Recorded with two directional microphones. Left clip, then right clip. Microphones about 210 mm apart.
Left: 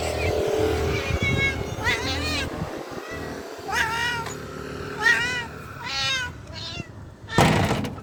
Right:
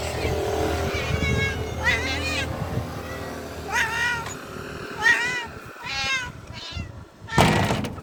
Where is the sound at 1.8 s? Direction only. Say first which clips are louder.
Right 2 dB; centre (ahead or behind).